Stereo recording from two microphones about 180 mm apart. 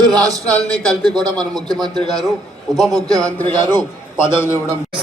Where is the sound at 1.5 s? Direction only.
20° right (ahead or behind).